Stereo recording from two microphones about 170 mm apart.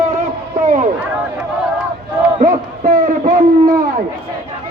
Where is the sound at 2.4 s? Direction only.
55° right (ahead or behind).